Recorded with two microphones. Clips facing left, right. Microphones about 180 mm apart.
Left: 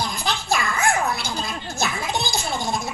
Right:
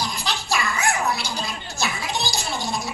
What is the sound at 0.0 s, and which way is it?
Dog, 50° left (ahead or behind).